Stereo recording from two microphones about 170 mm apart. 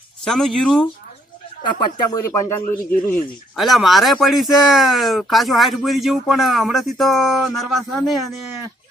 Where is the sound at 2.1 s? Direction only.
20° left (ahead or behind).